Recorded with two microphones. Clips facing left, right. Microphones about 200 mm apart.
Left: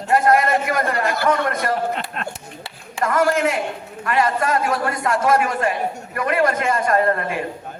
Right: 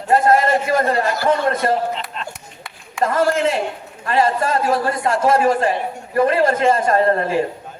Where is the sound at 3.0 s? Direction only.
30° right (ahead or behind).